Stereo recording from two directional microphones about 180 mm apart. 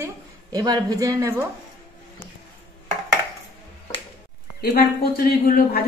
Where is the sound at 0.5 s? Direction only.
20° right (ahead or behind).